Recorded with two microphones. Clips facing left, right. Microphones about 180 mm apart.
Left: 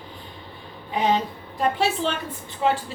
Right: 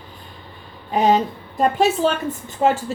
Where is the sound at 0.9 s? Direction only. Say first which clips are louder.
Right 5 dB; 45° right (ahead or behind).